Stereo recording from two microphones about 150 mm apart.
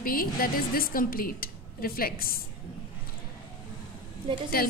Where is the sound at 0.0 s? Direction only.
75° left (ahead or behind).